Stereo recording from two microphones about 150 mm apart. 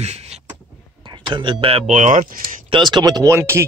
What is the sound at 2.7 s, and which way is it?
Speech, 30° right (ahead or behind).